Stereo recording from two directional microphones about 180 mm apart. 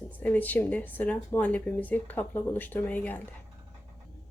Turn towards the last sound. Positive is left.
turn(degrees=10)  # may be behind; listen again after turning